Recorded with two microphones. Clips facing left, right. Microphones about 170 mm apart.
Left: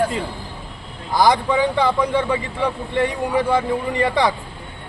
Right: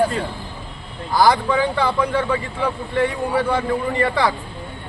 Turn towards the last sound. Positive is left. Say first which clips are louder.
# left 1 dB
turn(degrees=20)  # may be behind; listen again after turning